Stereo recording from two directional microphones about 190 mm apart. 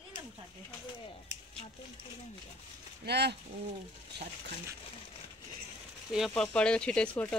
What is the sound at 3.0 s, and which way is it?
Speech, 60° right (ahead or behind).